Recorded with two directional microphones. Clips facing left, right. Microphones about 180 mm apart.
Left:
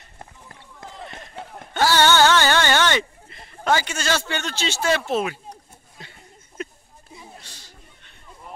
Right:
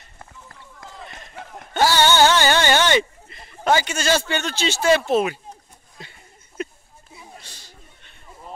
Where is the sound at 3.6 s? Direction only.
15° right (ahead or behind).